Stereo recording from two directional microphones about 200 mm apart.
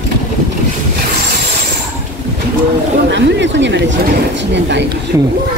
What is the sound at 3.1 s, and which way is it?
Speech, 60° right (ahead or behind).